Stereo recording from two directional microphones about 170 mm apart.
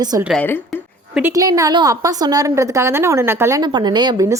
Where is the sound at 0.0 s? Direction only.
20° right (ahead or behind).